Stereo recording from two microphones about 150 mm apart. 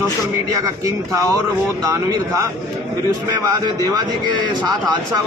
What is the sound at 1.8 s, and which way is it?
Speech, 20° right (ahead or behind).